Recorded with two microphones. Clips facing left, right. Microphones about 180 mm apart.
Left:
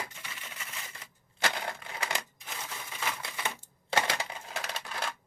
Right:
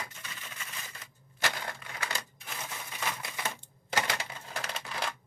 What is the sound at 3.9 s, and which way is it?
Coin, 25° left (ahead or behind).